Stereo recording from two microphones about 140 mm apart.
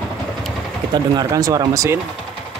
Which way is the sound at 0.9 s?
25° right (ahead or behind).